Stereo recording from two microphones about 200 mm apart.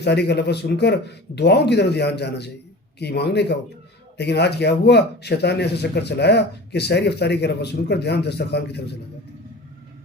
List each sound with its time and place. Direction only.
0.0 s speech: 55° left (ahead or behind)